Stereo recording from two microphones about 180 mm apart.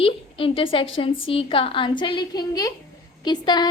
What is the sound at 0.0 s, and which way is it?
A woman's voice, 30° left (ahead or behind).